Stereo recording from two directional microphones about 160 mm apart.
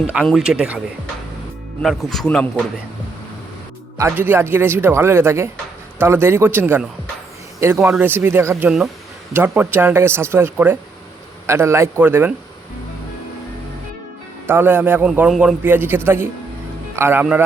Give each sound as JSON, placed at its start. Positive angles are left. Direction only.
{"t": 0.3, "sound": "a man's voice", "side_deg": -5}
{"t": 1.8, "sound": "a man's voice", "side_deg": 0}
{"t": 3.9, "sound": "speech", "side_deg": -15}
{"t": 7.9, "sound": "speech", "side_deg": -15}
{"t": 14.4, "sound": "speech", "side_deg": -15}